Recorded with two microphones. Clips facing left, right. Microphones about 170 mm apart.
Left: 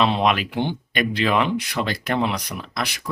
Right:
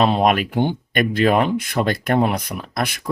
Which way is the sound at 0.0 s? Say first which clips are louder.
Right 3 dB; 45° right (ahead or behind).